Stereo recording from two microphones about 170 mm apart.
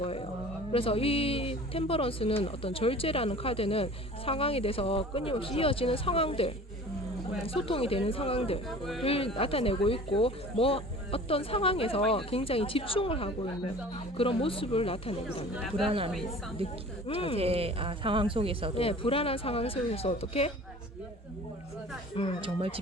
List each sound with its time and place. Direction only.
0.0 s a sound: 35° left (ahead or behind)
0.7 s speech: 35° left (ahead or behind)
8.8 s speech: centre (ahead or behind)
9.0 s speech: 35° left (ahead or behind)
15.9 s speech: 35° right (ahead or behind)
17.1 s speech: 35° left (ahead or behind)
17.3 s speech: 35° right (ahead or behind)
18.8 s speech: 35° left (ahead or behind)
22.4 s speech: 30° right (ahead or behind)